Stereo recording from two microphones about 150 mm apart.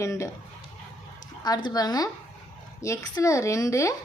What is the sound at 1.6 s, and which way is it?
A woman's voice, 25° left (ahead or behind).